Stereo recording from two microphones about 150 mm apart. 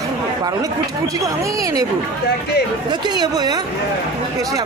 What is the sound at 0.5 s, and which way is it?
Speech, 25° right (ahead or behind).